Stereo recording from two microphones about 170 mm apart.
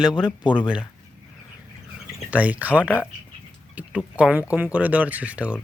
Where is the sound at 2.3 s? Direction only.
10° right (ahead or behind).